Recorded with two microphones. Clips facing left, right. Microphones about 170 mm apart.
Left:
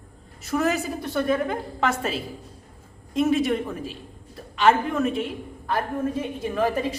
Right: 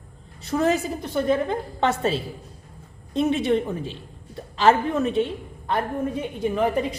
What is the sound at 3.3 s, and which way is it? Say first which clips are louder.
A man's voice: right 2 dB; 25° right (ahead or behind).